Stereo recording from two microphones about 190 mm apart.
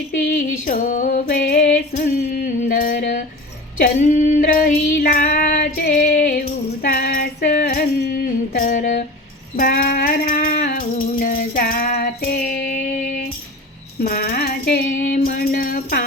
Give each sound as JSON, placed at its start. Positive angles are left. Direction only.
{"t": 0.3, "sound": "music", "side_deg": 45}
{"t": 3.8, "sound": "female singing", "side_deg": 40}
{"t": 6.8, "sound": "music", "side_deg": 45}
{"t": 8.0, "sound": "a sound", "side_deg": 50}
{"t": 9.6, "sound": "music", "side_deg": 45}
{"t": 11.1, "sound": "child singing", "side_deg": 45}
{"t": 14.0, "sound": "a sound", "side_deg": 55}